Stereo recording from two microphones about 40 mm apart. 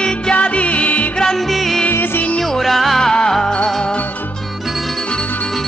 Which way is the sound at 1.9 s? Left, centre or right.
Left.